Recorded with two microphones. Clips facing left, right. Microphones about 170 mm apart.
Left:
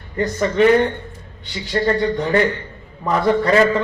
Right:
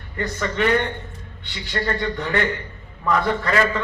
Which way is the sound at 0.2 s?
35° left (ahead or behind).